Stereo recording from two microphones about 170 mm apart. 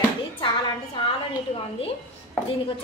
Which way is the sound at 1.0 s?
25° left (ahead or behind).